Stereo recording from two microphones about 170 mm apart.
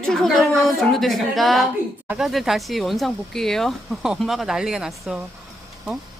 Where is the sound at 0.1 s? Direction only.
Centre (ahead or behind).